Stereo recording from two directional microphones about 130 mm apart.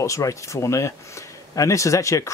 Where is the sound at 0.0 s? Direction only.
25° left (ahead or behind).